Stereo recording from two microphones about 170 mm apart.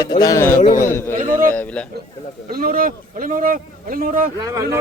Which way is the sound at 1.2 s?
55° right (ahead or behind).